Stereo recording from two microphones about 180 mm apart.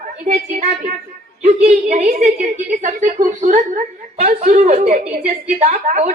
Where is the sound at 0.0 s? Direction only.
40° right (ahead or behind).